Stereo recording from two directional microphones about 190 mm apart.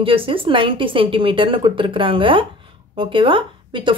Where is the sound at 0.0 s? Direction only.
30° right (ahead or behind).